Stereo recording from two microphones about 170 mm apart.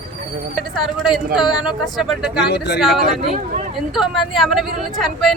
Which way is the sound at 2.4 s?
80° left.